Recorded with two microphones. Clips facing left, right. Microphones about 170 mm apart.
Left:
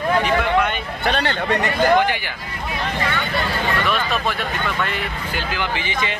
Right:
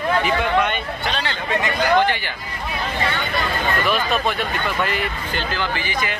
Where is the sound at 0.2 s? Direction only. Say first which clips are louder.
Left 1 dB; centre (ahead or behind).